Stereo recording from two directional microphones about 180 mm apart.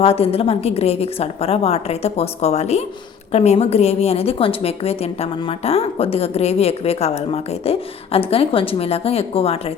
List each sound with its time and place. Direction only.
0.0 s a woman's voice: 35° left (ahead or behind)